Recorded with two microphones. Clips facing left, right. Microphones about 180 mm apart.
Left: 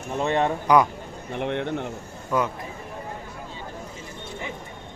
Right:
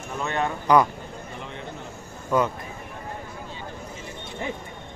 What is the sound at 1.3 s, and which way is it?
Speech, 70° left (ahead or behind).